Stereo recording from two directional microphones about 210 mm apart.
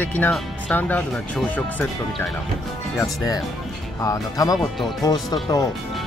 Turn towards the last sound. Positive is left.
turn(degrees=20)  # may be behind; listen again after turning